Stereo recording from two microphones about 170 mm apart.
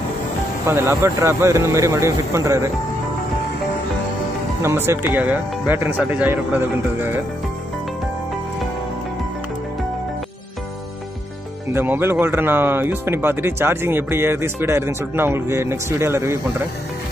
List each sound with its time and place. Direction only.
0.7 s speech: 15° right (ahead or behind)
4.6 s speech: 15° right (ahead or behind)
11.7 s speech: 10° right (ahead or behind)